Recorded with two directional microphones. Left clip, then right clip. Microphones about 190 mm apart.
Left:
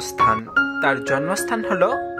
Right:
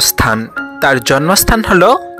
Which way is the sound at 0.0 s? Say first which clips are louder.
Right 5 dB; 40° right (ahead or behind).